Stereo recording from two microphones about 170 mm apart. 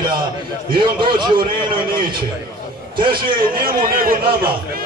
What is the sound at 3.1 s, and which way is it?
A man's voice, 55° right (ahead or behind).